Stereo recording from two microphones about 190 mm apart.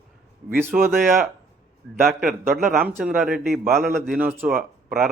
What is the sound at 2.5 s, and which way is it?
A man's voice, centre (ahead or behind).